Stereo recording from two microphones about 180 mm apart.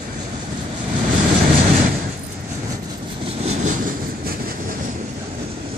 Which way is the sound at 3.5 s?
45° right (ahead or behind).